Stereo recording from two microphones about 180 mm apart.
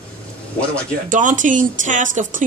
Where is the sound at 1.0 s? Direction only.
45° right (ahead or behind).